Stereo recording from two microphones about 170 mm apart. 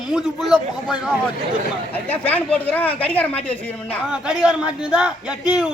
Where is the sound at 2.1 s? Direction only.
10° left (ahead or behind).